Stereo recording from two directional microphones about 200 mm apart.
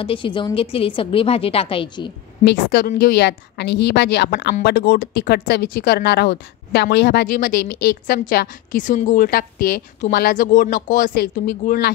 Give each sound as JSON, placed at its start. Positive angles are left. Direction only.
{"t": 0.0, "sound": "a woman's voice", "side_deg": 25}
{"t": 2.4, "sound": "speech", "side_deg": 55}